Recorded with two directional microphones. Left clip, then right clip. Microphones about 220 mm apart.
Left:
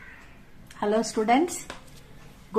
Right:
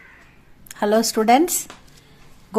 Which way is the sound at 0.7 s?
50° right (ahead or behind).